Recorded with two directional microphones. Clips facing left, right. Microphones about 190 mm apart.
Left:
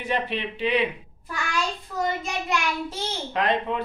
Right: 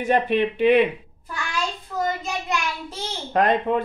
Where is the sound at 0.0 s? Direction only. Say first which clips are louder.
Right 8 dB; 50° right (ahead or behind).